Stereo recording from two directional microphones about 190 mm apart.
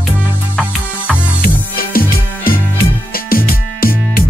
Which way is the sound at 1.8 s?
50° left (ahead or behind).